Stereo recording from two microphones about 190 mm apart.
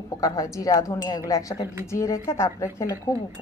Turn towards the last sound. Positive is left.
turn(degrees=15)  # may be behind; listen again after turning